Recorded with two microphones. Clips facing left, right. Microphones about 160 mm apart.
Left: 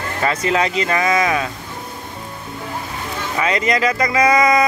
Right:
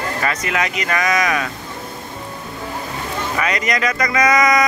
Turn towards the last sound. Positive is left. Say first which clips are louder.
# left 1 dB
turn(degrees=30)  # may be behind; listen again after turning